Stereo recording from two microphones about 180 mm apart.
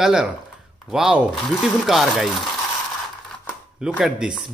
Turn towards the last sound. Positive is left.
turn(degrees=-5)  # may be behind; listen again after turning